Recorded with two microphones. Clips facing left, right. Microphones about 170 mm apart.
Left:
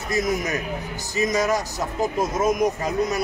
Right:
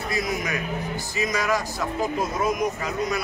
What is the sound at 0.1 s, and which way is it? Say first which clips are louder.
Speech: left 5 dB; 45° left (ahead or behind).